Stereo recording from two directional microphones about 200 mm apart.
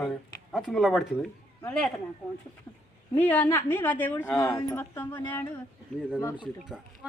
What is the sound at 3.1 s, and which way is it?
A woman's voice, 10° left (ahead or behind).